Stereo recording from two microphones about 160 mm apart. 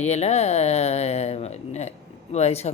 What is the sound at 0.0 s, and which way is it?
Speech, 45° left (ahead or behind).